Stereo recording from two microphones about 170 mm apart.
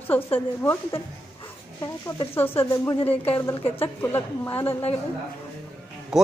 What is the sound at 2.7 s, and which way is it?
Speech, 25° left (ahead or behind).